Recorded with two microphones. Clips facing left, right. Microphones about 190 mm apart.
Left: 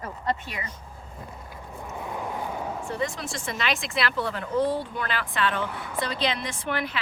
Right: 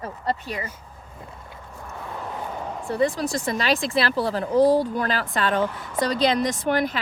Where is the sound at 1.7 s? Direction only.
15° left (ahead or behind).